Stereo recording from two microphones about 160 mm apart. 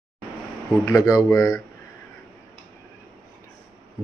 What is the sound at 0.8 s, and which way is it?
Speech, 20° left (ahead or behind).